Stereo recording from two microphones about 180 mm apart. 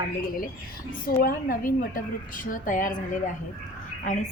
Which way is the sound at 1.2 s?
55° left (ahead or behind).